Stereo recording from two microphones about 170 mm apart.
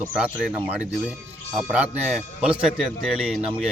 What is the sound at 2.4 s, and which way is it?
Speech, 5° right (ahead or behind).